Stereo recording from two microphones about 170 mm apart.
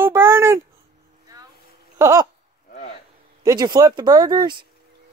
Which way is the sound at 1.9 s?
20° right (ahead or behind).